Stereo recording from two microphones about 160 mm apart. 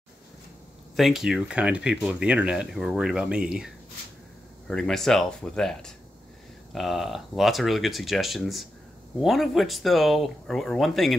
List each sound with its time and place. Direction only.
0.9 s speech: centre (ahead or behind)